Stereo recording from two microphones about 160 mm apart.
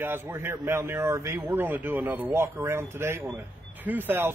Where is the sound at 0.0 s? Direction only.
15° right (ahead or behind).